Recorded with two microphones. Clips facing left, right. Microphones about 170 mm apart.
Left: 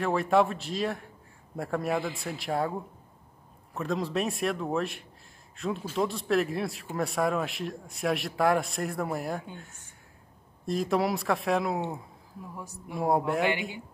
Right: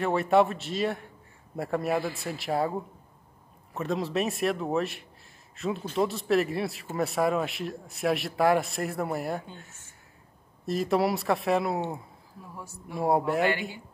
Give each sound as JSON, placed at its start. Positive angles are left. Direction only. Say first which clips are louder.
{"t": 0.0, "sound": "speech", "louder": "right 2 dB", "side_deg": 0}
{"t": 10.6, "sound": "speech", "louder": "right 2 dB", "side_deg": 0}
{"t": 12.5, "sound": "speech", "louder": "right 1 dB", "side_deg": 15}
{"t": 12.9, "sound": "speech", "louder": "right 1 dB", "side_deg": 0}
{"t": 13.5, "sound": "speech", "louder": "right 1 dB", "side_deg": 20}